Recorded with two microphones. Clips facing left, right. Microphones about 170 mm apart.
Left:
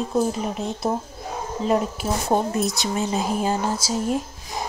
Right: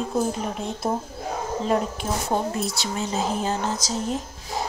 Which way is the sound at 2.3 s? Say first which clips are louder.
Left 5 dB; 25° left (ahead or behind).